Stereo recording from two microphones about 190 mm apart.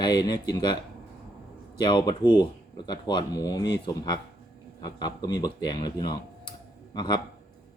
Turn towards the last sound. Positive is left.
turn(degrees=25)  # may be behind; listen again after turning